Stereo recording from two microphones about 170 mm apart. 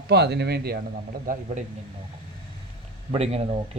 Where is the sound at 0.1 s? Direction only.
80° right.